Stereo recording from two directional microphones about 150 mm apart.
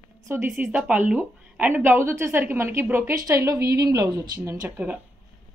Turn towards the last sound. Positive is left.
turn(degrees=-25)  # may be behind; listen again after turning